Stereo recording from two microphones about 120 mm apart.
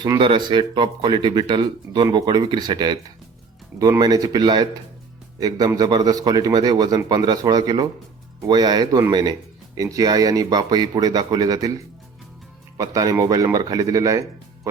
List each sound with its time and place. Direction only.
0.2 s a man's voice: 45° right (ahead or behind)
4.0 s a man's voice: 30° right (ahead or behind)
12.7 s speech: 30° right (ahead or behind)